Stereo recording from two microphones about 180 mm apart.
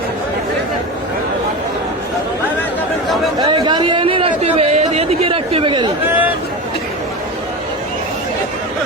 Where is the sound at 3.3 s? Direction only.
25° right (ahead or behind).